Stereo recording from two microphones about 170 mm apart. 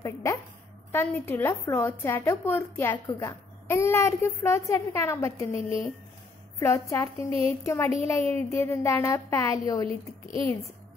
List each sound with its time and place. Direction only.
0.0 s a woman's voice: 20° left (ahead or behind)
6.6 s a woman's voice: 15° left (ahead or behind)
9.8 s a woman's voice: 30° right (ahead or behind)